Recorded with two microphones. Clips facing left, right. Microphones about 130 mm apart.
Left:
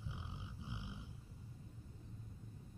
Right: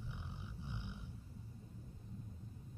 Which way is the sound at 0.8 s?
90° left.